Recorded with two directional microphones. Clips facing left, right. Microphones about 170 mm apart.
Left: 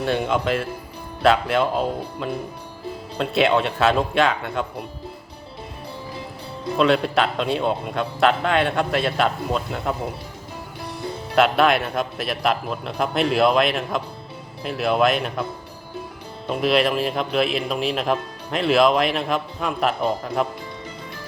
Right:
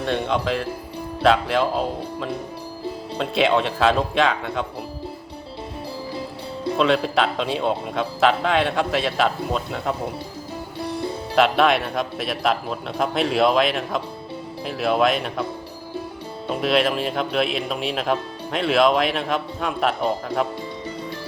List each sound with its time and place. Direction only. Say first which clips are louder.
0.0 s a man's voice: left 1 dB; 5° left (ahead or behind)
6.7 s a man's voice: left 1 dB; centre (ahead or behind)
11.3 s a man's voice: even; centre (ahead or behind)
16.5 s a man's voice: left 1 dB; centre (ahead or behind)